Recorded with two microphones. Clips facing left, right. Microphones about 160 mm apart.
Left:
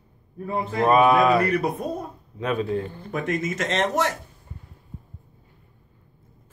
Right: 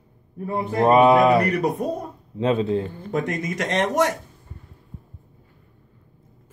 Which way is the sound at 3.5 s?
15° right (ahead or behind).